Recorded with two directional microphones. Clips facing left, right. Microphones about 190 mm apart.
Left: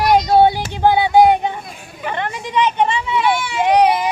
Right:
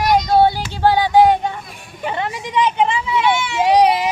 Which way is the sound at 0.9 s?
10° left (ahead or behind).